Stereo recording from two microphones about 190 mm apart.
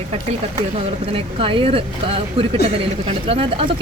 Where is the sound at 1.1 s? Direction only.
30° right (ahead or behind).